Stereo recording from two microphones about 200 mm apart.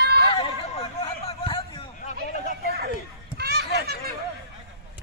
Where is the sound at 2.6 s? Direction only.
50° right (ahead or behind).